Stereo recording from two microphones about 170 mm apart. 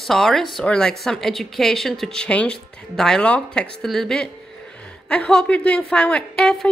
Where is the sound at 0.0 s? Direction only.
Centre (ahead or behind).